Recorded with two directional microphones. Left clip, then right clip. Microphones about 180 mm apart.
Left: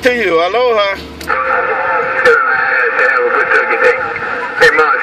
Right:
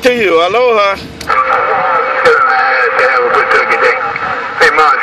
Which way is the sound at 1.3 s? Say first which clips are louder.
Right 3 dB; 40° right (ahead or behind).